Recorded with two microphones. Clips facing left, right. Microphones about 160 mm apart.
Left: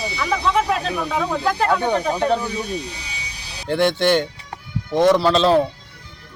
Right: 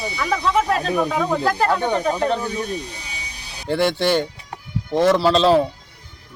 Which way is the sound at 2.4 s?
45° right (ahead or behind).